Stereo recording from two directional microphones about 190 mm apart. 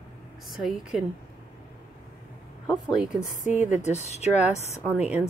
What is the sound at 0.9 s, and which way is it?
Speech, centre (ahead or behind).